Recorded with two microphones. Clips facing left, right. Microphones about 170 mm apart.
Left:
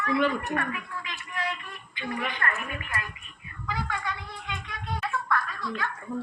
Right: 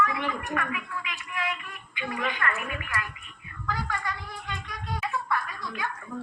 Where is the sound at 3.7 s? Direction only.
5° left (ahead or behind).